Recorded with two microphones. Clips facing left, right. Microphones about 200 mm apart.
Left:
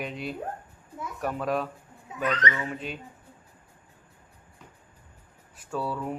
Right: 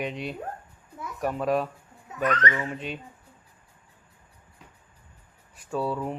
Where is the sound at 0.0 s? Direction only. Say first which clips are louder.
Right 1 dB; centre (ahead or behind).